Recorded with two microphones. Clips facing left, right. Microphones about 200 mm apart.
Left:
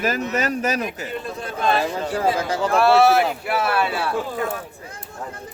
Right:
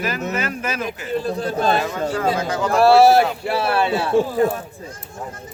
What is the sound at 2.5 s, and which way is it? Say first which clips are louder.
Speech: right 1 dB; 35° left (ahead or behind).